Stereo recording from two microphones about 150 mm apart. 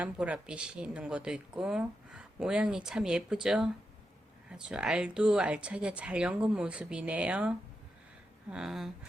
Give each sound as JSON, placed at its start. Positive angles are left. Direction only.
{"t": 0.0, "sound": "speech", "side_deg": -5}